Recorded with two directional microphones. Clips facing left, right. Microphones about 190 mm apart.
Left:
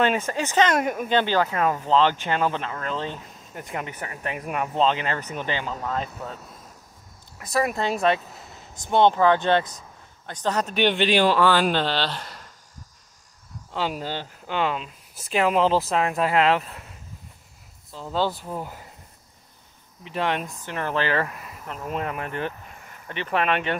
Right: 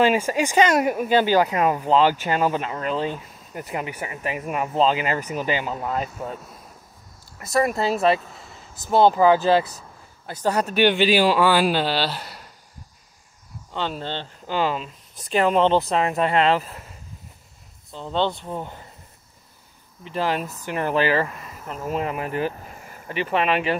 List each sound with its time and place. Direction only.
0.0 s speech: 10° right (ahead or behind)
7.3 s speech: centre (ahead or behind)
13.7 s speech: 10° left (ahead or behind)
17.9 s speech: 5° left (ahead or behind)
20.0 s speech: centre (ahead or behind)